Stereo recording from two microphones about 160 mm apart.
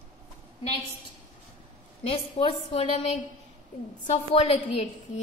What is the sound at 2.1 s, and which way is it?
A woman's voice, 35° left (ahead or behind).